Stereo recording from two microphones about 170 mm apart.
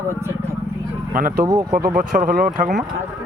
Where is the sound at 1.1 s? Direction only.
55° right (ahead or behind).